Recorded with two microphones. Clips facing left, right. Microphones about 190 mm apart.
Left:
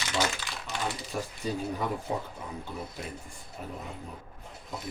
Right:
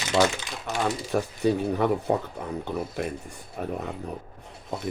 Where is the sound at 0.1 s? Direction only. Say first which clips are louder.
Right 8 dB; 75° right (ahead or behind).